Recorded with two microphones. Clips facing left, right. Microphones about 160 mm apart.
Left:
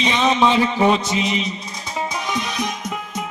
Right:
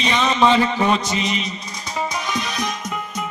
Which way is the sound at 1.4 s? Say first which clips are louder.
Left 2 dB; centre (ahead or behind).